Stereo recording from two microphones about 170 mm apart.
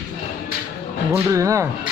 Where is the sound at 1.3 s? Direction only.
20° right (ahead or behind).